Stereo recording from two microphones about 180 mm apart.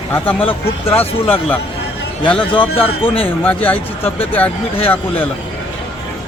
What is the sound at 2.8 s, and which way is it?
Speech, 30° left (ahead or behind).